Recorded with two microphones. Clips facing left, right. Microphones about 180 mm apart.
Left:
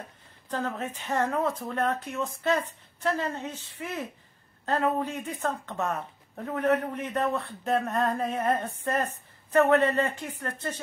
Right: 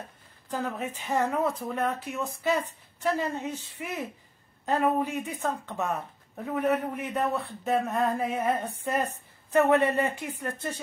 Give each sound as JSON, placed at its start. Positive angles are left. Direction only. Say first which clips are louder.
{"t": 0.5, "sound": "speech", "louder": "even", "side_deg": -10}